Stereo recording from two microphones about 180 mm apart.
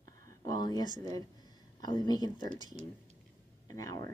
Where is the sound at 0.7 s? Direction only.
25° left (ahead or behind).